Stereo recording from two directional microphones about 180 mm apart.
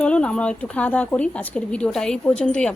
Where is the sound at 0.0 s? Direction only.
5° left (ahead or behind).